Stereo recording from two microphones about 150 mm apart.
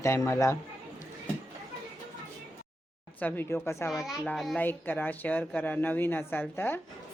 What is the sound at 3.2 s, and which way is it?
Speech, 10° left (ahead or behind).